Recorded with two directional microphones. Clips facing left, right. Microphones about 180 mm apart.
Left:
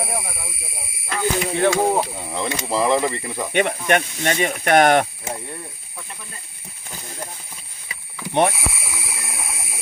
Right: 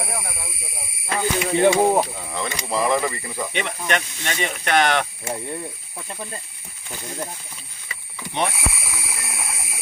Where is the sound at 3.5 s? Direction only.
50° left (ahead or behind).